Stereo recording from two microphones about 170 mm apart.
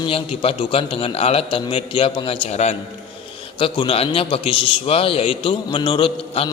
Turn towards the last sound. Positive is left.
turn(degrees=30)  # may be behind; listen again after turning